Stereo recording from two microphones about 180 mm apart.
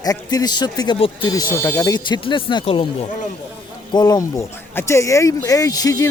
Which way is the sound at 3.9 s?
20° left (ahead or behind).